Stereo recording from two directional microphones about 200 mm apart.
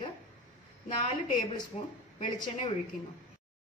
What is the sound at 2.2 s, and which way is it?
Speech, 25° left (ahead or behind).